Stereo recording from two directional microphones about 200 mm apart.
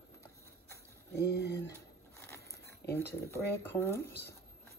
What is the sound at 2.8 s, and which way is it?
Speech, 55° left (ahead or behind).